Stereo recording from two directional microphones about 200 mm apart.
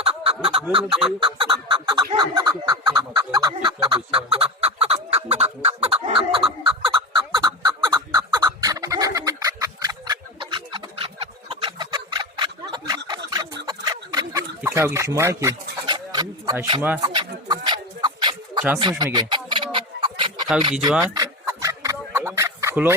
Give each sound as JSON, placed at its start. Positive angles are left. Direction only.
{"t": 0.0, "sound": "chicken", "side_deg": -30}
{"t": 13.7, "sound": "a sound", "side_deg": -20}
{"t": 21.0, "sound": "chicken", "side_deg": -15}